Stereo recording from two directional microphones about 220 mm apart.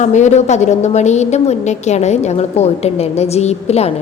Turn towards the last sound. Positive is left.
turn(degrees=30)  # may be behind; listen again after turning